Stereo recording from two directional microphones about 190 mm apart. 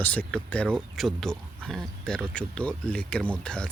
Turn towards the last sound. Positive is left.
turn(degrees=5)  # may be behind; listen again after turning